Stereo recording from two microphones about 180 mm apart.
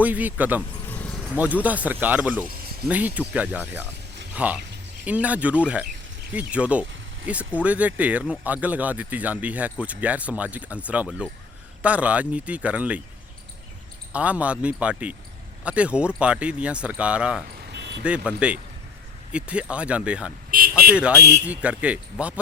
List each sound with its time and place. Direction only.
0.0 s speech: 10° right (ahead or behind)
0.9 s a sound: 10° left (ahead or behind)
1.6 s speech: 10° right (ahead or behind)
14.1 s speech: 5° right (ahead or behind)
17.7 s vehicle: 70° right (ahead or behind)
18.0 s speech: 5° right (ahead or behind)
20.5 s vehicle: 50° right (ahead or behind)
21.2 s speech: 10° right (ahead or behind)